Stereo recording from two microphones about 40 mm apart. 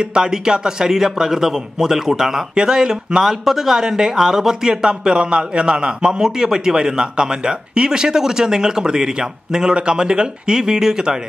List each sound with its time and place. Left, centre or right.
0.0 s speech: right